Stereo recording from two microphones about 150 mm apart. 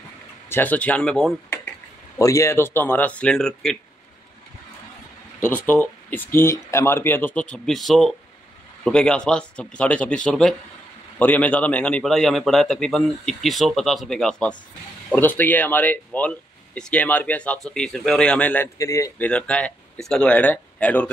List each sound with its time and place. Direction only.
0.5 s speech: 10° left (ahead or behind)
2.1 s speech: 20° left (ahead or behind); by 3.7 s 5° left (ahead or behind)
5.4 s a man's voice: 10° left (ahead or behind)
19.2 s speech: 10° left (ahead or behind)